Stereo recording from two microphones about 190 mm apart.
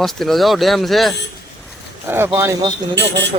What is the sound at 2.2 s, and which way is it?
Speech, 20° right (ahead or behind).